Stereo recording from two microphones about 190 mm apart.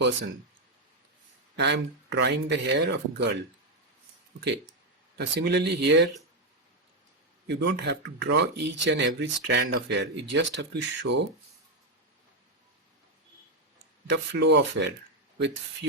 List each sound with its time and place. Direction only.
1.5 s speech: 65° right (ahead or behind)
5.1 s speech: 65° right (ahead or behind)
7.4 s speech: 65° right (ahead or behind)
14.1 s speech: 70° right (ahead or behind)